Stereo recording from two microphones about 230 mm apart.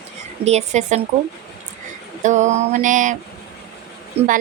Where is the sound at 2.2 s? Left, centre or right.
Right.